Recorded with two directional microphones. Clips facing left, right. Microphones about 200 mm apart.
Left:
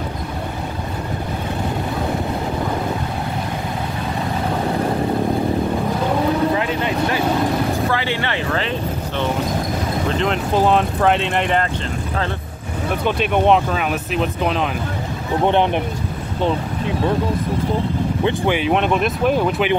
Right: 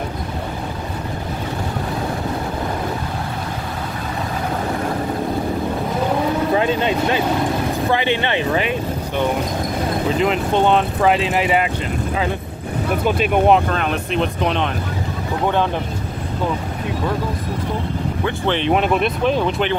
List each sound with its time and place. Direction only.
6.5 s vehicle: 25° right (ahead or behind)
7.9 s a sound: 20° right (ahead or behind)
10.0 s speech: 5° right (ahead or behind)
13.0 s speech: 5° right (ahead or behind)
13.7 s speech: 5° left (ahead or behind)
15.4 s speech: 20° left (ahead or behind)
18.2 s speech: 10° left (ahead or behind)
18.7 s speech: centre (ahead or behind)